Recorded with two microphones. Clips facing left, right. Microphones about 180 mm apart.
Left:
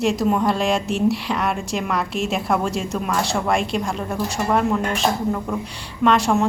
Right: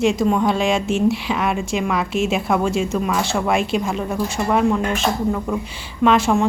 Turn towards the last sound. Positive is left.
turn(degrees=0)  # may be behind; listen again after turning